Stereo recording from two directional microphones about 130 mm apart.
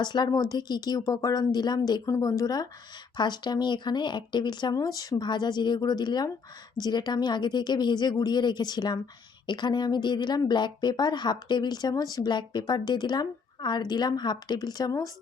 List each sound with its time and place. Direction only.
0.0 s speech: 35° left (ahead or behind)